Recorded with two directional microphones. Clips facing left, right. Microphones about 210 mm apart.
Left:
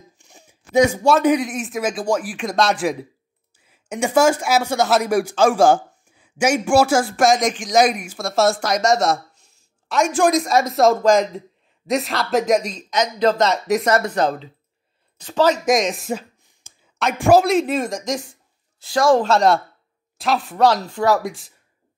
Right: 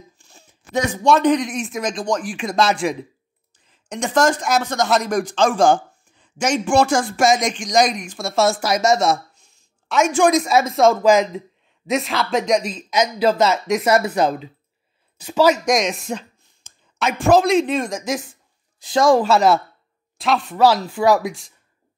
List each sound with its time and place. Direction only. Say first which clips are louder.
0.2 s speech: left 1 dB; 15° left (ahead or behind); by 15.6 s 10° right (ahead or behind)
15.6 s speech: left 1 dB; centre (ahead or behind)
16.6 s a sound: left 1 dB; 10° left (ahead or behind)
17.0 s speech: left 1 dB; 5° left (ahead or behind)
18.8 s speech: right 1 dB; 20° right (ahead or behind)
19.1 s speech: right 1 dB; 10° right (ahead or behind)
21.2 s speech: right 1 dB; centre (ahead or behind)